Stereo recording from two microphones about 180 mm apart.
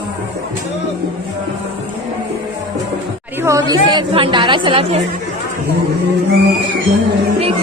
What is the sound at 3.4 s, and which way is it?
A woman's voice, 20° right (ahead or behind).